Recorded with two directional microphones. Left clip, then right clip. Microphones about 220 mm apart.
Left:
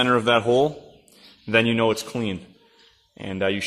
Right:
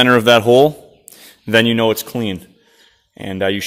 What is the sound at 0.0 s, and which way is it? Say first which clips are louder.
A man's voice: right 8 dB; 40° right (ahead or behind).